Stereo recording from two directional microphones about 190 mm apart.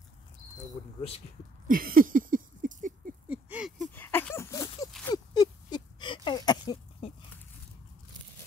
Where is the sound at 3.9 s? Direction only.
10° left (ahead or behind).